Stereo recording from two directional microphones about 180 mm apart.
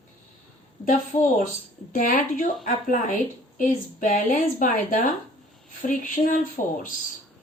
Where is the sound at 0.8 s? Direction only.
45° left (ahead or behind).